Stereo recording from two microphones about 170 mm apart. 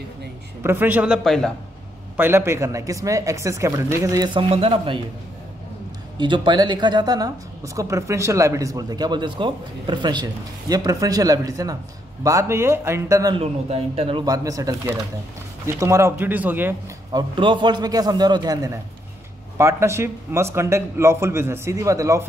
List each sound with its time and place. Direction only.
0.7 s a man's voice: 10° right (ahead or behind)
2.1 s a woman's voice: 15° right (ahead or behind); by 5.0 s 30° right (ahead or behind)
6.1 s a woman's voice: 25° right (ahead or behind)
13.4 s a man's voice: 35° right (ahead or behind)
14.2 s a woman's voice: 20° right (ahead or behind)
17.1 s a woman's voice: 30° right (ahead or behind)